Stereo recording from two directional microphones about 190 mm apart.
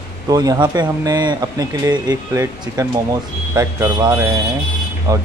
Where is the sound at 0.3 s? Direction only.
20° right (ahead or behind).